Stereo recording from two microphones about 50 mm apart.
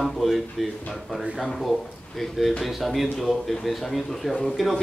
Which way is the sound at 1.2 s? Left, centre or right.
Centre.